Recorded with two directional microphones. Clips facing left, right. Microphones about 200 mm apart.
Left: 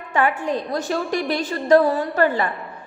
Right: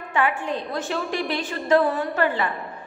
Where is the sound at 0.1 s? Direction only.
40° left (ahead or behind).